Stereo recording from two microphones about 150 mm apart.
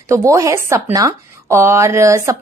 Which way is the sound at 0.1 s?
20° right (ahead or behind).